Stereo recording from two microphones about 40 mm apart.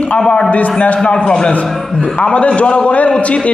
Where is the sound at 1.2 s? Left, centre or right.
Left.